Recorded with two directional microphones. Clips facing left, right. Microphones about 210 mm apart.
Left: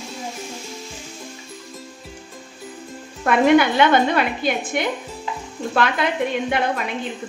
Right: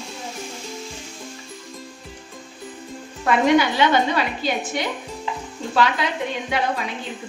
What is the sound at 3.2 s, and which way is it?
A woman's voice, 55° left (ahead or behind).